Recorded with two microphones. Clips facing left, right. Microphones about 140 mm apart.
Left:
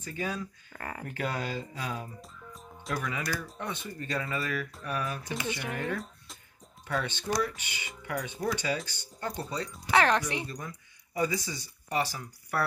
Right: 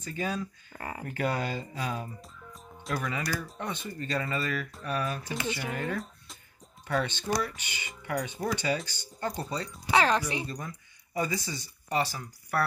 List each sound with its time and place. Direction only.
0.0 s speech: 5° left (ahead or behind)
0.7 s speech: 10° right (ahead or behind)
1.1 s speech: centre (ahead or behind)
2.5 s music: centre (ahead or behind)
3.3 s speech: 5° right (ahead or behind)
9.8 s speech: 10° right (ahead or behind); by 12.2 s 10° left (ahead or behind)